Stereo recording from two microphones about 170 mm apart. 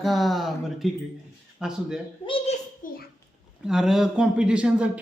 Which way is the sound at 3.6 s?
5° right (ahead or behind).